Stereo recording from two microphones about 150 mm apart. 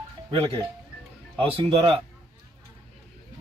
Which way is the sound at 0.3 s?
35° right (ahead or behind).